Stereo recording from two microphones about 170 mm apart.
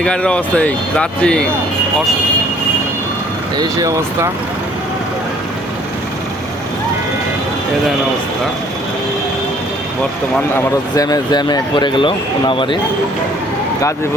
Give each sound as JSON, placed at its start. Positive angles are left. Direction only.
{"t": 0.0, "sound": "speech", "side_deg": 5}
{"t": 3.6, "sound": "speech", "side_deg": -20}
{"t": 10.5, "sound": "speech", "side_deg": 20}